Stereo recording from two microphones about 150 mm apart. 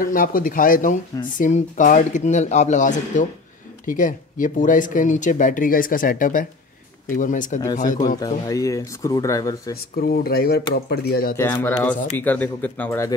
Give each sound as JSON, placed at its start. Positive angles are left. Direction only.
{"t": 0.0, "sound": "speech", "side_deg": 70}
{"t": 8.5, "sound": "speech", "side_deg": 20}
{"t": 9.9, "sound": "speech", "side_deg": 90}
{"t": 11.3, "sound": "speech", "side_deg": 15}